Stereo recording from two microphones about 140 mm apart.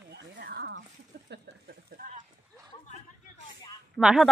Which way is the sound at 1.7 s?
90° right.